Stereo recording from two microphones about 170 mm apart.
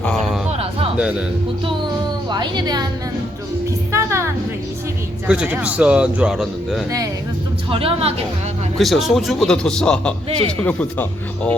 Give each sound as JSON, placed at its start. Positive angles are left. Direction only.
{"t": 0.0, "sound": "a sound", "side_deg": 5}
{"t": 2.3, "sound": "a woman's voice", "side_deg": -25}
{"t": 3.9, "sound": "music", "side_deg": -15}
{"t": 5.3, "sound": "speech", "side_deg": -10}
{"t": 7.7, "sound": "speech", "side_deg": -35}
{"t": 8.8, "sound": "a man's voice", "side_deg": 0}
{"t": 10.2, "sound": "speech", "side_deg": -35}
{"t": 10.6, "sound": "speech", "side_deg": 10}